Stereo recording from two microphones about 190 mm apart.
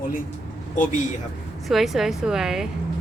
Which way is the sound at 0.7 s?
40° left (ahead or behind).